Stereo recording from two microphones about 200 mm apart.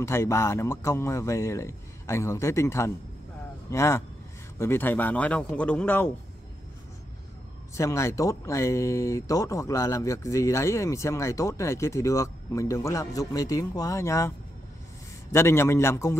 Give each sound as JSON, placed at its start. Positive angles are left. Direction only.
{"t": 0.0, "sound": "speech", "side_deg": 15}
{"t": 7.7, "sound": "speech", "side_deg": 15}
{"t": 15.3, "sound": "speech", "side_deg": 10}